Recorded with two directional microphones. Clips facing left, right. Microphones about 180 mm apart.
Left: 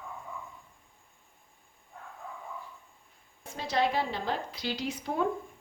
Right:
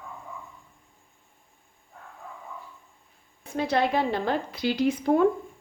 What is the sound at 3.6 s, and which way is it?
A woman's voice, 55° right (ahead or behind).